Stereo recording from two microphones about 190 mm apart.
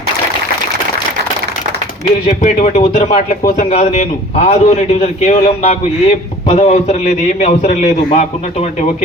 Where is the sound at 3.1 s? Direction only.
50° left (ahead or behind).